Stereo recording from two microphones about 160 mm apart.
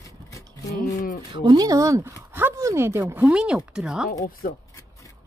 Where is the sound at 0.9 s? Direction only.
50° left (ahead or behind).